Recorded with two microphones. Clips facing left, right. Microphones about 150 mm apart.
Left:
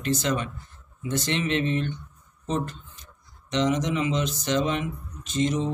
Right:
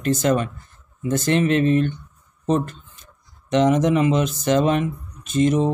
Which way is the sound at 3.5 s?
50° right (ahead or behind).